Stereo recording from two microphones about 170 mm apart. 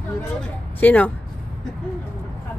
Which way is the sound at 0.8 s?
10° left (ahead or behind).